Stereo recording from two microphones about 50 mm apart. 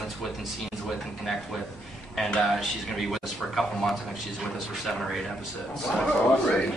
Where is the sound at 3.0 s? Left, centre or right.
Centre.